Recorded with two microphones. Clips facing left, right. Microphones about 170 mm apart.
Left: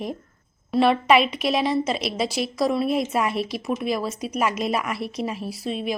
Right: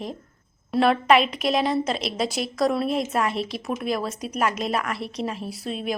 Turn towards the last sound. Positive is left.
turn(degrees=0)  # may be behind; listen again after turning